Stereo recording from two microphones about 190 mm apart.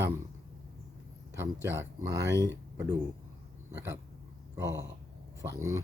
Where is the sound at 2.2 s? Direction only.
65° right (ahead or behind).